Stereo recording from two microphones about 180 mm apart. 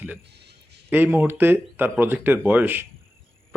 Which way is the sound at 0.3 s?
65° right (ahead or behind).